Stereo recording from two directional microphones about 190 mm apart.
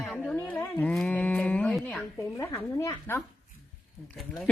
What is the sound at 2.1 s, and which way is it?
A woman's voice, 15° left (ahead or behind).